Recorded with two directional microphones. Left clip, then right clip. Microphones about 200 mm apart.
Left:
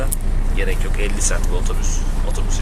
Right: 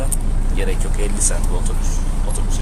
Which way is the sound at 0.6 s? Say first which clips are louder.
Left 1 dB; 15° right (ahead or behind).